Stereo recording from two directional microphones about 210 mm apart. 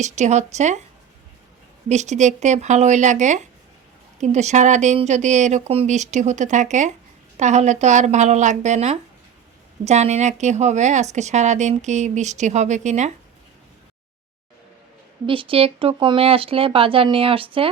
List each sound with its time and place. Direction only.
0.0 s a woman's voice: 35° right (ahead or behind)
1.9 s a woman's voice: 35° right (ahead or behind)
15.3 s speech: 25° right (ahead or behind)